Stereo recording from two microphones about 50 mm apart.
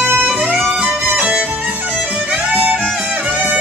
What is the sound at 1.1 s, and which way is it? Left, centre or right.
Music, right.